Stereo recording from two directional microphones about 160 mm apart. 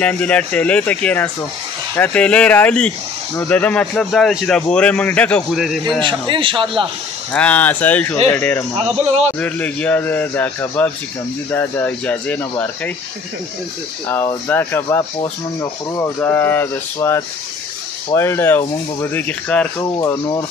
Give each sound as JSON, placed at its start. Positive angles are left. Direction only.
{"t": 0.0, "sound": "a man's voice", "side_deg": 5}
{"t": 5.9, "sound": "a man's voice", "side_deg": -30}
{"t": 7.3, "sound": "speech", "side_deg": 10}
{"t": 14.0, "sound": "speech", "side_deg": 15}